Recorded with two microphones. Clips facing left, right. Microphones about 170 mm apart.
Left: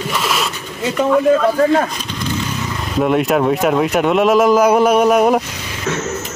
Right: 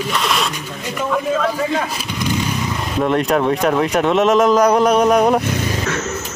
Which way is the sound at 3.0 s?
5° left (ahead or behind).